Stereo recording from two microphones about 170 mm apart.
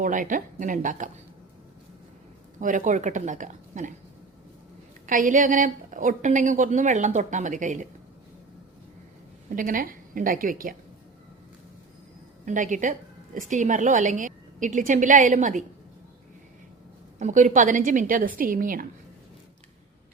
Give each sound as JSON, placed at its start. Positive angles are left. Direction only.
{"t": 0.0, "sound": "a woman's voice", "side_deg": -50}
{"t": 2.6, "sound": "a woman's voice", "side_deg": -50}
{"t": 5.0, "sound": "a woman's voice", "side_deg": -50}
{"t": 9.6, "sound": "a woman's voice", "side_deg": -55}
{"t": 12.5, "sound": "a woman's voice", "side_deg": -45}
{"t": 17.2, "sound": "a woman's voice", "side_deg": -45}